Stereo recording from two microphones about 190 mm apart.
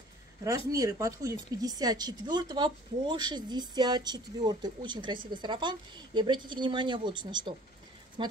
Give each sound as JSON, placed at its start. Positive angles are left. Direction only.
{"t": 0.7, "sound": "speech", "side_deg": -15}